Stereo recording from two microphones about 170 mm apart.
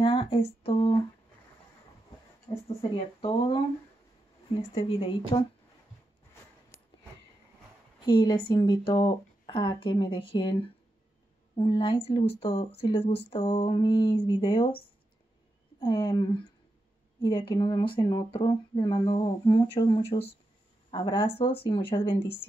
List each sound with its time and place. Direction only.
0.0 s speech: 30° left (ahead or behind)
2.7 s speech: 35° left (ahead or behind)
4.7 s speech: 35° left (ahead or behind)
8.0 s speech: 25° left (ahead or behind)
15.8 s speech: 25° left (ahead or behind)